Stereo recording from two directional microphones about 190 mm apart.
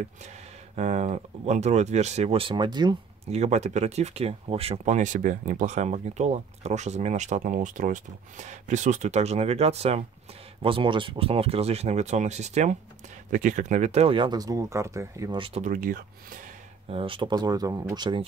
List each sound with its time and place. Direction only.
0.7 s speech: 35° right (ahead or behind)
3.3 s speech: 35° right (ahead or behind); by 15.4 s 15° right (ahead or behind)
15.4 s speech: 35° right (ahead or behind)
16.9 s speech: 25° right (ahead or behind)